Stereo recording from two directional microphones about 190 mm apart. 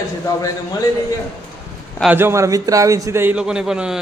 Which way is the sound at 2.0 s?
10° right (ahead or behind).